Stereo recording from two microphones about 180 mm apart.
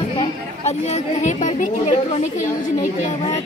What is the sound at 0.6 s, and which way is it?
Speech, 40° left (ahead or behind).